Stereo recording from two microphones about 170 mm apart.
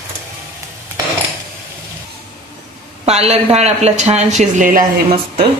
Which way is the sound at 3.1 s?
40° right (ahead or behind).